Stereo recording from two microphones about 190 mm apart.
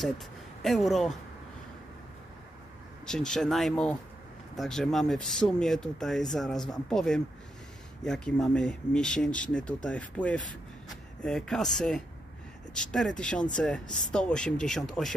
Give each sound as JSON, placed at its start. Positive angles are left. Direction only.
{"t": 0.6, "sound": "speech", "side_deg": 0}
{"t": 3.1, "sound": "speech", "side_deg": 5}